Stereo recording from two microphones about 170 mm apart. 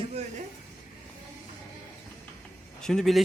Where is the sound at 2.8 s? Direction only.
5° left (ahead or behind).